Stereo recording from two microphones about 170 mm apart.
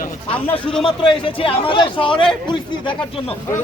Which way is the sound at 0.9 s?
30° left (ahead or behind).